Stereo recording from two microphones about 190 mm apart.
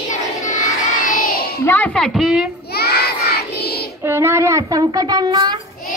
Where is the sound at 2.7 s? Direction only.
55° left (ahead or behind).